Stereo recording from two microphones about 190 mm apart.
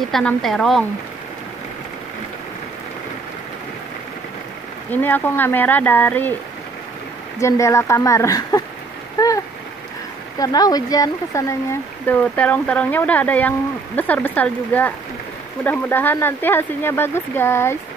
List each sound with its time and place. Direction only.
0.1 s speech: 5° left (ahead or behind)
4.9 s speech: 10° left (ahead or behind)
7.3 s speech: 15° left (ahead or behind)
9.2 s a sound: 20° left (ahead or behind)
10.4 s speech: 20° left (ahead or behind)
12.1 s speech: 10° left (ahead or behind)